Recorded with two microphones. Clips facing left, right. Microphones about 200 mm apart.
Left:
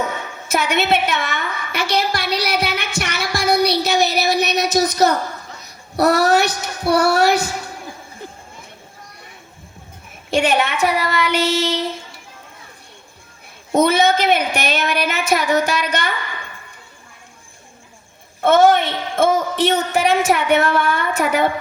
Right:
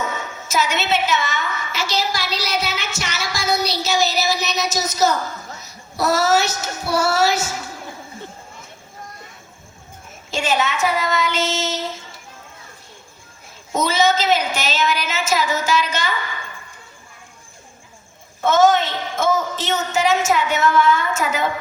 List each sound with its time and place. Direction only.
0.4 s a woman's voice: 60° left (ahead or behind)
10.3 s a woman's voice: 60° left (ahead or behind)
13.7 s a woman's voice: 60° left (ahead or behind)
18.4 s a woman's voice: 60° left (ahead or behind)